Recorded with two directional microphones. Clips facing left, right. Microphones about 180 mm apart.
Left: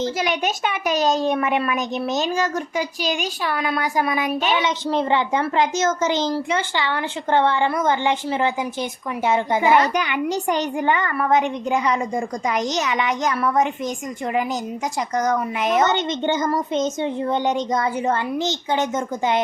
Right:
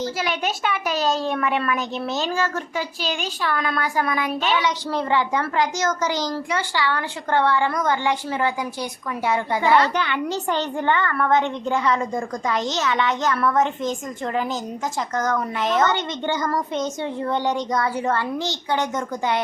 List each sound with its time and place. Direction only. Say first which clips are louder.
0.0 s a woman's voice: left 3 dB; 20° left (ahead or behind)
15.1 s a woman's voice: left 3 dB; 15° left (ahead or behind)